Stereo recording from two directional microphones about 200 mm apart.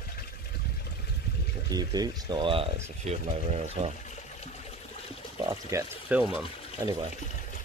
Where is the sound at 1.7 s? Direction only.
20° right (ahead or behind).